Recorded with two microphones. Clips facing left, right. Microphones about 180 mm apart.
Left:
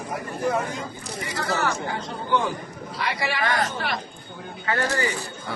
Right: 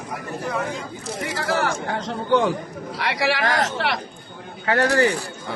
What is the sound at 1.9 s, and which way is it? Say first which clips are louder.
A man's voice: right 5 dB; 70° right (ahead or behind).